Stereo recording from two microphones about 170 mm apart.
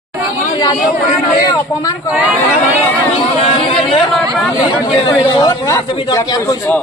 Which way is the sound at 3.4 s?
35° left (ahead or behind).